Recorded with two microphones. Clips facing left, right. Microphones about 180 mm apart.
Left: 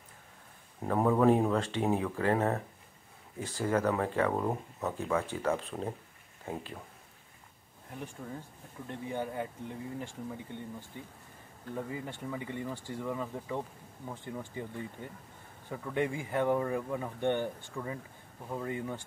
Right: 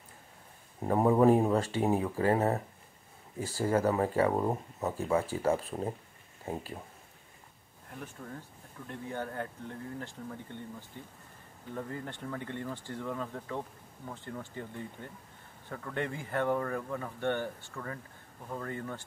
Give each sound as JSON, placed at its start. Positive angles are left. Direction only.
{"t": 0.8, "sound": "speech", "side_deg": -20}
{"t": 8.0, "sound": "speech", "side_deg": 5}